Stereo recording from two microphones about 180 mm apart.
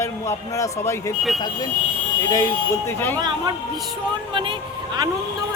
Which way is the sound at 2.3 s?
15° left (ahead or behind).